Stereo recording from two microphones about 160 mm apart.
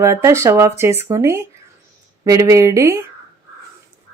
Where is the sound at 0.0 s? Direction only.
15° right (ahead or behind).